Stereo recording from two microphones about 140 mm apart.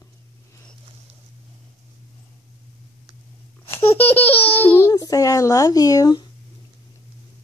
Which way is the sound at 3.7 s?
15° left (ahead or behind).